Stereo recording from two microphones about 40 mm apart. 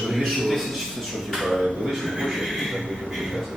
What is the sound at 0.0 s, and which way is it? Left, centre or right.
A man's voice, centre.